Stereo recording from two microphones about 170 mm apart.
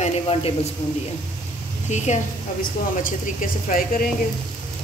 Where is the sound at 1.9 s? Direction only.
45° left (ahead or behind).